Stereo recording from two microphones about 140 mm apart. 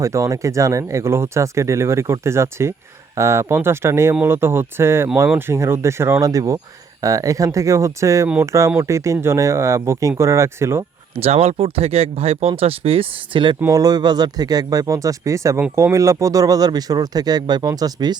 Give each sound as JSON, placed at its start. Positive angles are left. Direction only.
{"t": 0.0, "sound": "speech", "side_deg": -20}
{"t": 11.1, "sound": "speech", "side_deg": -45}
{"t": 13.6, "sound": "speech", "side_deg": -25}